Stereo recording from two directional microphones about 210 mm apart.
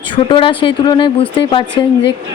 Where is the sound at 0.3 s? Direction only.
25° left (ahead or behind).